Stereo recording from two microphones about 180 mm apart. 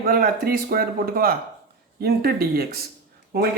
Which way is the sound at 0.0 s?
50° right (ahead or behind).